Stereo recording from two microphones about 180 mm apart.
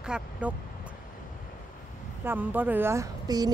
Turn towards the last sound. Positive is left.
turn(degrees=-20)  # may be behind; listen again after turning